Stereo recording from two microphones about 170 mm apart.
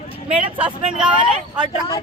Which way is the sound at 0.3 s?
30° right (ahead or behind).